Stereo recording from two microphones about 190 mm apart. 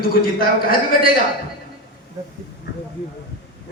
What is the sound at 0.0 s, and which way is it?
A man's voice, 50° left (ahead or behind).